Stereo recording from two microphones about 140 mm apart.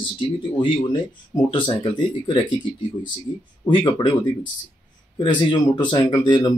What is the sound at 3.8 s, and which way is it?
Speech, 35° left (ahead or behind).